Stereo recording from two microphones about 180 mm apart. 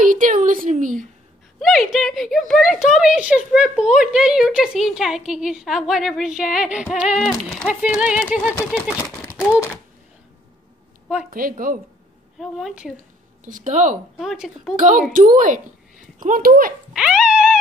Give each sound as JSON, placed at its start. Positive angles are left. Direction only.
{"t": 0.0, "sound": "a woman's voice", "side_deg": -45}
{"t": 1.6, "sound": "speech", "side_deg": 0}
{"t": 8.5, "sound": "speech", "side_deg": 5}
{"t": 11.2, "sound": "a woman's voice", "side_deg": -50}
{"t": 12.4, "sound": "speech", "side_deg": 0}
{"t": 13.5, "sound": "a woman's voice", "side_deg": -45}
{"t": 14.1, "sound": "speech", "side_deg": 0}
{"t": 14.8, "sound": "a woman's voice", "side_deg": -45}
{"t": 16.9, "sound": "dog", "side_deg": -5}